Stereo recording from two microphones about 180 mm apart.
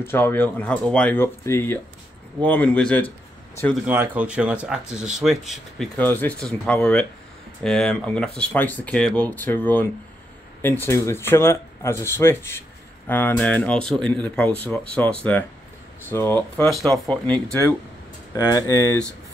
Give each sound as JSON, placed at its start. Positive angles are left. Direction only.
{"t": 0.0, "sound": "speech", "side_deg": 10}
{"t": 3.8, "sound": "speech", "side_deg": -10}
{"t": 5.9, "sound": "speech", "side_deg": 10}
{"t": 18.3, "sound": "speech", "side_deg": 20}